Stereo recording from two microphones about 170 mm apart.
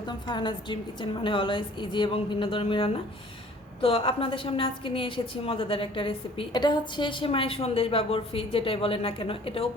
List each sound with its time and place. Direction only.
0.1 s a woman's voice: 25° left (ahead or behind)